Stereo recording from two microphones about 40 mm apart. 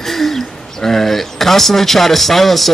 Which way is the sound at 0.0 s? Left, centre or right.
Centre.